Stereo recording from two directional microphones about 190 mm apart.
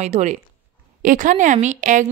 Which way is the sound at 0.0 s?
35° right (ahead or behind).